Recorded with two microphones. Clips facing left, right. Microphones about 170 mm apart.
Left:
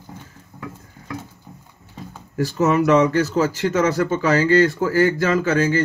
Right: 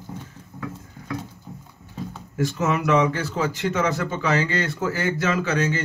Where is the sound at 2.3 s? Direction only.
40° left (ahead or behind).